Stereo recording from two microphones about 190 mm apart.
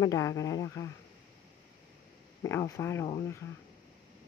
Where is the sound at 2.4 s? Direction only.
15° left (ahead or behind).